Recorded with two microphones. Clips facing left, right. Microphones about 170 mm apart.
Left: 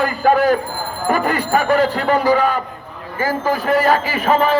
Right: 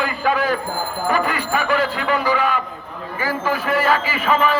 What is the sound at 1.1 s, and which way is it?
A man's voice, 45° left (ahead or behind).